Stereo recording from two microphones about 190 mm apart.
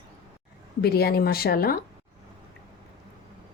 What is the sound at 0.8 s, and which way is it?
Speech, 55° left (ahead or behind).